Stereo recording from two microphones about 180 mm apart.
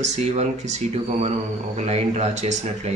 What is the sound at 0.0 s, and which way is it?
Speech, 40° right (ahead or behind).